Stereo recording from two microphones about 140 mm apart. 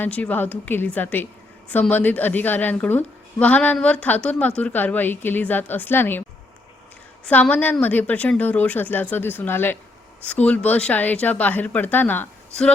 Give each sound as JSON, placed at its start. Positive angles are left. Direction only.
{"t": 0.0, "sound": "a woman's voice", "side_deg": 10}
{"t": 7.3, "sound": "a woman's voice", "side_deg": 10}